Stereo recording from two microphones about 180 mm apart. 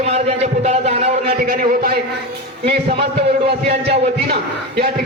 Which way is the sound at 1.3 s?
55° right (ahead or behind).